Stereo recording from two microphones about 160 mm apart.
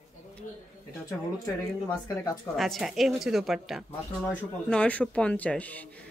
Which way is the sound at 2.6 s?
Centre (ahead or behind).